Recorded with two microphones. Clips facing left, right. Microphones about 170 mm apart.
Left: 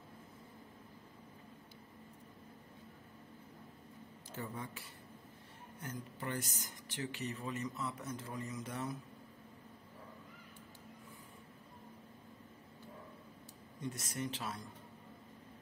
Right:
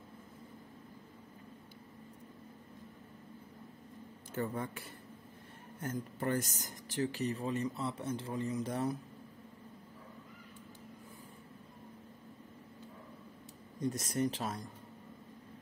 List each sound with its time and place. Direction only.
4.4 s speech: 55° right (ahead or behind); by 8.9 s 35° right (ahead or behind)
13.7 s speech: 40° right (ahead or behind)